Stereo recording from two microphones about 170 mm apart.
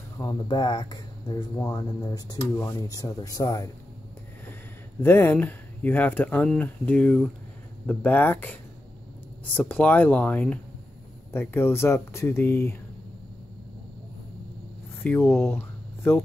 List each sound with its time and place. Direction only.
0.2 s speech: 25° left (ahead or behind)
5.0 s speech: 15° left (ahead or behind)
15.0 s speech: 10° left (ahead or behind)